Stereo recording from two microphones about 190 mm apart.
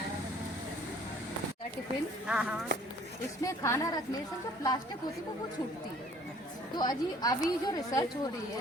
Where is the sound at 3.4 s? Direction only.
15° left (ahead or behind).